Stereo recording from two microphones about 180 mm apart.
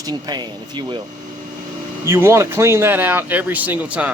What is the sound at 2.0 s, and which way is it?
Speech, 15° right (ahead or behind).